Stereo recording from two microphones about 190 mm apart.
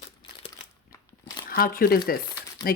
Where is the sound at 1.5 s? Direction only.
50° left (ahead or behind).